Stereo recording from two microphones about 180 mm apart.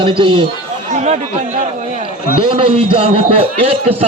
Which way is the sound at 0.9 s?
40° right (ahead or behind).